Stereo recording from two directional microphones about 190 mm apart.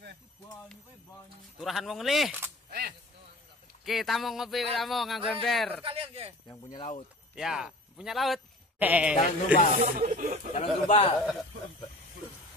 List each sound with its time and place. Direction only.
1.6 s speech: centre (ahead or behind)
3.8 s speech: centre (ahead or behind)
5.9 s speech: 30° right (ahead or behind)
6.4 s speech: 15° left (ahead or behind)
7.3 s a man's voice: 5° right (ahead or behind)
9.1 s a man's voice: 45° left (ahead or behind)
9.8 s speech: 45° right (ahead or behind)
10.5 s a man's voice: 30° left (ahead or behind)